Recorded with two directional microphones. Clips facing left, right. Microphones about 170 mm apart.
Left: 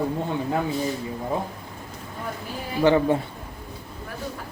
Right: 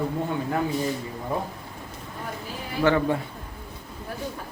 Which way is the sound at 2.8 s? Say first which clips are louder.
Left 3 dB; 20° left (ahead or behind).